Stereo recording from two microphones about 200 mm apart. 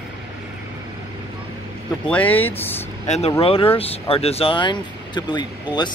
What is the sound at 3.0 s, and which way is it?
Speech, 35° left (ahead or behind).